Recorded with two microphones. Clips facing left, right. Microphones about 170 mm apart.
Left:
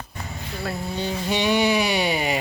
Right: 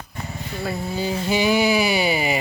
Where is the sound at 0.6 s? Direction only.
Centre (ahead or behind).